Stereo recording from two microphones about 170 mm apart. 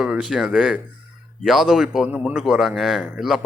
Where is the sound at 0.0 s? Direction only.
5° right (ahead or behind).